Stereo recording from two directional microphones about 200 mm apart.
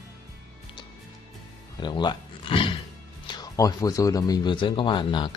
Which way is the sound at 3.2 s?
20° left (ahead or behind).